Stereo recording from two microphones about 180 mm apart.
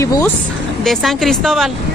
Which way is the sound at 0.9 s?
Centre (ahead or behind).